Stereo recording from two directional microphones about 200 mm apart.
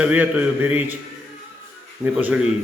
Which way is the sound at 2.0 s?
5° right (ahead or behind).